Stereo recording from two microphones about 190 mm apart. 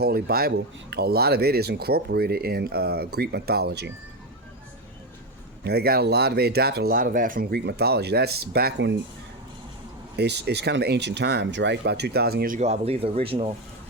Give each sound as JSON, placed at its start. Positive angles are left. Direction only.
{"t": 0.0, "sound": "speech", "side_deg": -50}
{"t": 5.6, "sound": "speech", "side_deg": -55}
{"t": 10.2, "sound": "speech", "side_deg": -60}
{"t": 12.5, "sound": "speech", "side_deg": -35}